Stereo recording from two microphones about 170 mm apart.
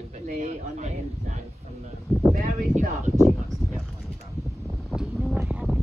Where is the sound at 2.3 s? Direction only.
55° right (ahead or behind).